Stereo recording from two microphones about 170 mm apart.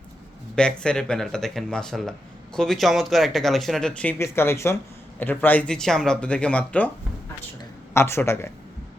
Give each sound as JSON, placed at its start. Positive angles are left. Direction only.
{"t": 0.5, "sound": "speech", "side_deg": 5}